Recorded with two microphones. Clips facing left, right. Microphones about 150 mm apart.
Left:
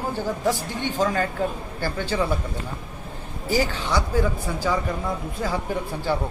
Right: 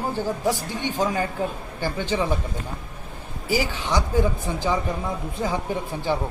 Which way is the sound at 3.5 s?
15° right (ahead or behind).